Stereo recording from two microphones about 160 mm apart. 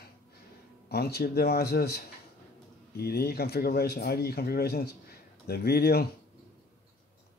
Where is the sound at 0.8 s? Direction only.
85° left.